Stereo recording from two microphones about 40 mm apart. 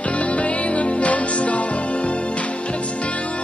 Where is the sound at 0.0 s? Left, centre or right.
Left.